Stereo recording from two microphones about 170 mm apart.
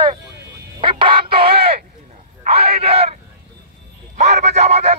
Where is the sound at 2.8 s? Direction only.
35° right (ahead or behind).